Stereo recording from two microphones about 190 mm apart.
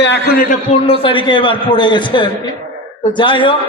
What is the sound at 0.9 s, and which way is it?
A man's voice, 30° left (ahead or behind).